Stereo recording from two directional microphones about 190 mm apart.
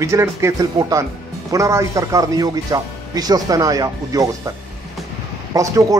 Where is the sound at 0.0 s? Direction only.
15° right (ahead or behind).